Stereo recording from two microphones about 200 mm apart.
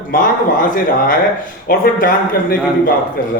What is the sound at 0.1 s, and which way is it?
Speech, 45° left (ahead or behind).